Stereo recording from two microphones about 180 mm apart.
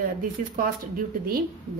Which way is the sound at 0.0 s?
50° right (ahead or behind).